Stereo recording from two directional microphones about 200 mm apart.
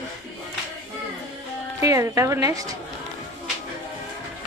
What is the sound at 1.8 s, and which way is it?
Speech, 15° right (ahead or behind).